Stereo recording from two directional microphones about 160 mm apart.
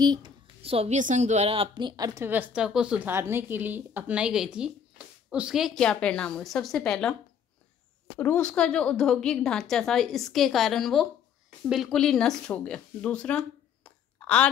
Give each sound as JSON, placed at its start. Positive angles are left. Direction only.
{"t": 0.0, "sound": "a woman's voice", "side_deg": -30}
{"t": 8.2, "sound": "a woman's voice", "side_deg": 10}